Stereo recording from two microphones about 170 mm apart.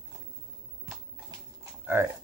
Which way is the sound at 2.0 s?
15° right (ahead or behind).